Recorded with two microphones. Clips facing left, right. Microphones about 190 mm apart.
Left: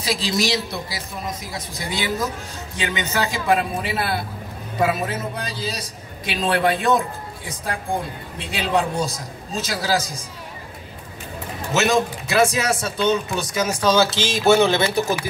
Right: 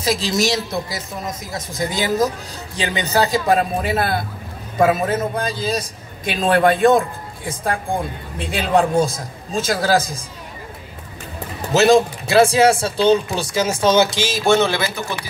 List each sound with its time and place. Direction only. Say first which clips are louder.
0.0 s a man's voice: right 3 dB; 45° right (ahead or behind)
11.7 s speech: right 6 dB; 30° right (ahead or behind)
14.1 s music: right 1 dB; 10° right (ahead or behind)
14.4 s speech: left 1 dB; 10° left (ahead or behind)
15.0 s speech: left 6 dB; 35° left (ahead or behind)